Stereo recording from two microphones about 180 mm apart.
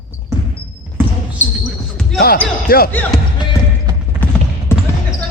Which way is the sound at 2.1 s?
55° left (ahead or behind).